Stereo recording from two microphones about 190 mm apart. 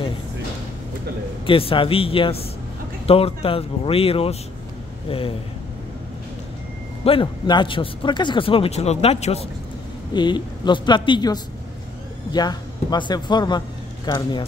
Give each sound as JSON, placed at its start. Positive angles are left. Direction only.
{"t": 1.4, "sound": "speech", "side_deg": 30}
{"t": 7.1, "sound": "speech", "side_deg": 25}